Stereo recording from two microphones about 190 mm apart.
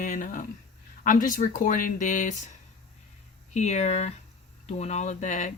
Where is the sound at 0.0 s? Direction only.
40° left (ahead or behind).